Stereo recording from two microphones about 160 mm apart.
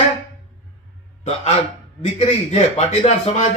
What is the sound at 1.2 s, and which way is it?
Speech, 40° left (ahead or behind).